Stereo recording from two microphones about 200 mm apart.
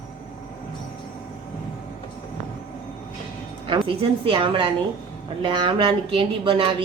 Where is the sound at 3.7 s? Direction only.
25° right (ahead or behind).